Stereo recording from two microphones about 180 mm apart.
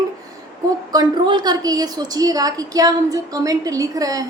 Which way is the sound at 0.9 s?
25° right (ahead or behind).